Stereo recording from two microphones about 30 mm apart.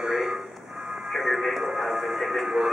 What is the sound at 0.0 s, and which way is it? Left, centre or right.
Music, centre.